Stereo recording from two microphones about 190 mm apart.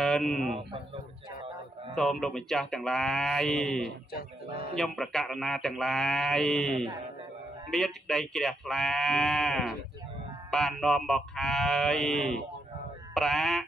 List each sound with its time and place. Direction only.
0.0 s a man's voice: centre (ahead or behind)
2.0 s speech: centre (ahead or behind)
4.1 s speech: 55° left (ahead or behind)
4.7 s speech: centre (ahead or behind)